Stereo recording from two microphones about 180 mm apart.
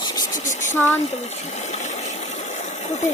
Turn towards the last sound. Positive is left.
turn(degrees=40)  # may be behind; listen again after turning